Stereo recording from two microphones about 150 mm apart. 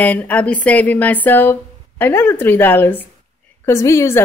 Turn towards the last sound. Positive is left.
turn(degrees=20)  # may be behind; listen again after turning